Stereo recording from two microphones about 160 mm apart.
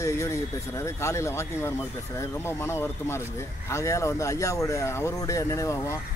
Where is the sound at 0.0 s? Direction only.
20° left (ahead or behind).